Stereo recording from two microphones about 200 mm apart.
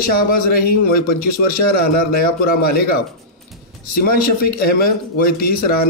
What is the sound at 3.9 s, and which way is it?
A man's voice, 45° left (ahead or behind).